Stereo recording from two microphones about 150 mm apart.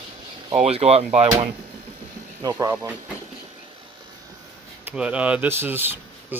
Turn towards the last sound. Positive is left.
turn(degrees=-15)  # may be behind; listen again after turning